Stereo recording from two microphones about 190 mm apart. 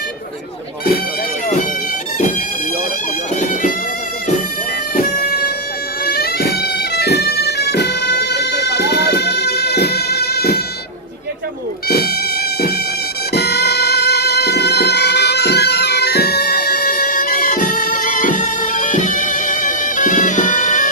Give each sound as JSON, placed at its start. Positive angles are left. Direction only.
{"t": 4.9, "sound": "bagpipes", "side_deg": 50}
{"t": 11.9, "sound": "music", "side_deg": 55}
{"t": 13.3, "sound": "music", "side_deg": 55}